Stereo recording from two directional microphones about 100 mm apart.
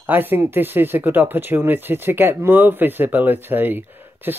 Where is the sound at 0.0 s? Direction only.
20° right (ahead or behind).